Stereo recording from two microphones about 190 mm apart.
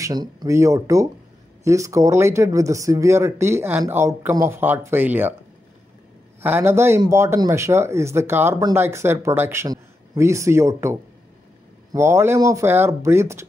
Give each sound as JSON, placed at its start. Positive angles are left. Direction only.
{"t": 0.0, "sound": "speech", "side_deg": -20}
{"t": 6.4, "sound": "speech", "side_deg": -10}